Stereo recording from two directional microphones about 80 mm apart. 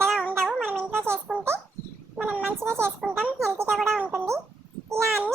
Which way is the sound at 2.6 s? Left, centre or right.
Right.